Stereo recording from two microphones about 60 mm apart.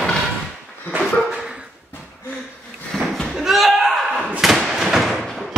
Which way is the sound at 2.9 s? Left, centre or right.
Centre.